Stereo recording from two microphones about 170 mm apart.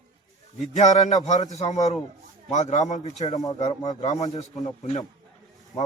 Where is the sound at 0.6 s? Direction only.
45° left (ahead or behind).